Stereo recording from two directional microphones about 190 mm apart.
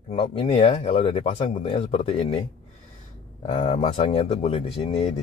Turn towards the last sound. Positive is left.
turn(degrees=35)  # may be behind; listen again after turning